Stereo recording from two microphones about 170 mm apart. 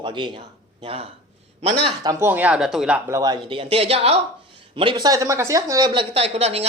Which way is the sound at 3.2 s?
25° right (ahead or behind).